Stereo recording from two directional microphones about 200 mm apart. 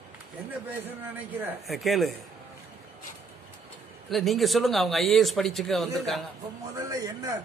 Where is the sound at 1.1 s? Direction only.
5° right (ahead or behind).